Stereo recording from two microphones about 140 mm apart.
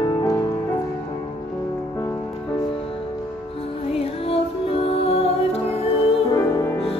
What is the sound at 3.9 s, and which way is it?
Music, 45° left (ahead or behind).